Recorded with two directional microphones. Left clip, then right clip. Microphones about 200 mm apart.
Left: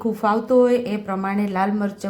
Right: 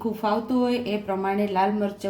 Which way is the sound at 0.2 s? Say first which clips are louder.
Left 8 dB; 25° left (ahead or behind).